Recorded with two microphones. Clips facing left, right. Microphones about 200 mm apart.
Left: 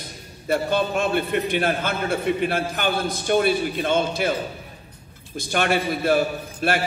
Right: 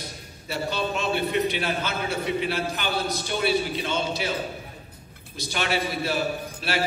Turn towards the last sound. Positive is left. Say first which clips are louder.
# left 5 dB
turn(degrees=50)  # may be behind; listen again after turning